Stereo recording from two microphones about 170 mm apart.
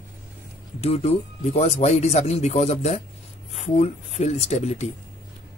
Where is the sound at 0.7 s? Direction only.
35° left (ahead or behind).